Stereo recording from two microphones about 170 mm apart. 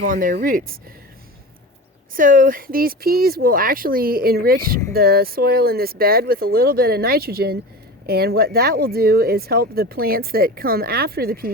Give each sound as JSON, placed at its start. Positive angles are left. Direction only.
{"t": 0.0, "sound": "speech", "side_deg": -55}
{"t": 2.1, "sound": "speech", "side_deg": -55}